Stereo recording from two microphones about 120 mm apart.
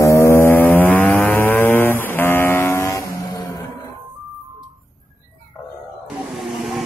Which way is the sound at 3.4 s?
30° left (ahead or behind).